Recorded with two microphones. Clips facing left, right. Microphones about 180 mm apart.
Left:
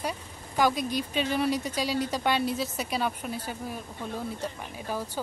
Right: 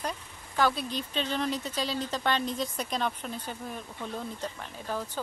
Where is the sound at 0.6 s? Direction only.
10° left (ahead or behind).